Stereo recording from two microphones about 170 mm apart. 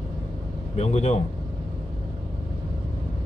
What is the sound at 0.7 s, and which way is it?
Speech, 40° left (ahead or behind).